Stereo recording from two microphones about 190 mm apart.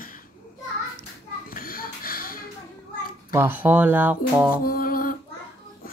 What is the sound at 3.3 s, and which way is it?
Speech, 10° right (ahead or behind).